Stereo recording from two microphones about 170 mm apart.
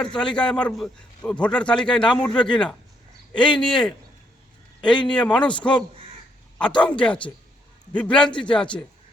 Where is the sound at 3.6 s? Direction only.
5° left (ahead or behind).